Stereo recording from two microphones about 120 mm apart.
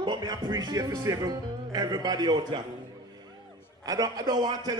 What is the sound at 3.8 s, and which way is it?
Speech, 30° right (ahead or behind).